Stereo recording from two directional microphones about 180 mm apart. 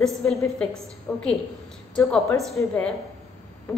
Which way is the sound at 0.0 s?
Centre (ahead or behind).